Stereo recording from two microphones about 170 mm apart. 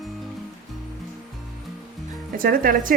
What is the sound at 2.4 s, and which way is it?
Speech, 55° right (ahead or behind).